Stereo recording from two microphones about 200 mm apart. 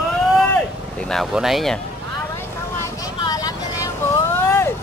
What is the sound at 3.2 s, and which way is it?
Vehicle, 20° left (ahead or behind).